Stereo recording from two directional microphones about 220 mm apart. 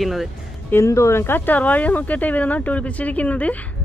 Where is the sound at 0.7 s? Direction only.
15° left (ahead or behind).